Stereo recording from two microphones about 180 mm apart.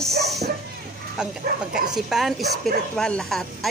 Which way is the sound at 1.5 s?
55° right (ahead or behind).